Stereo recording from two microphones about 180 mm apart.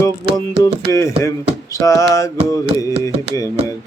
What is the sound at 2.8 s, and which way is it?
Music, 20° left (ahead or behind).